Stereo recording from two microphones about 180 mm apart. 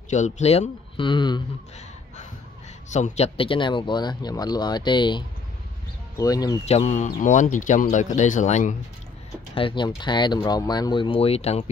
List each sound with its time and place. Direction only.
0.1 s speech: 40° left (ahead or behind)
2.9 s speech: 40° left (ahead or behind); by 6.6 s 20° left (ahead or behind)
6.6 s speech: 40° left (ahead or behind)
9.6 s speech: 25° left (ahead or behind)